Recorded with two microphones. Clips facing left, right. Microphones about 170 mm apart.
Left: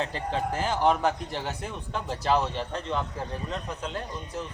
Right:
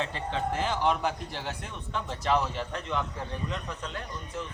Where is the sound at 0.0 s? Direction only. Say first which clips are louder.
Left 2 dB; 35° left (ahead or behind).